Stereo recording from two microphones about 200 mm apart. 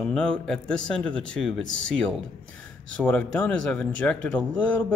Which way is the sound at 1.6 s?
65° left (ahead or behind).